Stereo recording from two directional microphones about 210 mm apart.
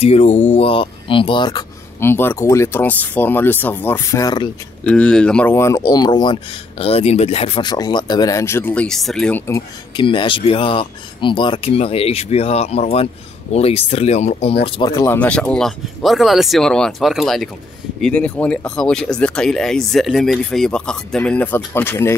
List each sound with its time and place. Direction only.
0.0 s speech: 30° left (ahead or behind)
4.8 s speech: 5° left (ahead or behind)
9.9 s speech: 25° left (ahead or behind)
14.7 s speech: 20° left (ahead or behind)